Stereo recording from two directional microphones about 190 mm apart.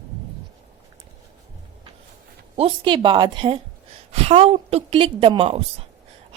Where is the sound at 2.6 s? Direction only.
30° right (ahead or behind).